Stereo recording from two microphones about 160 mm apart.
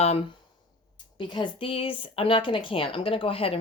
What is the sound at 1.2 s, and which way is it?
Speech, 30° left (ahead or behind).